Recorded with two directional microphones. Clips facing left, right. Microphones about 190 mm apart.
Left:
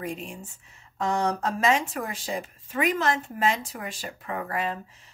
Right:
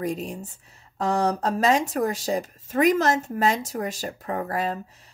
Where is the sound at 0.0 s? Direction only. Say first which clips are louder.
Right 6 dB; 40° right (ahead or behind).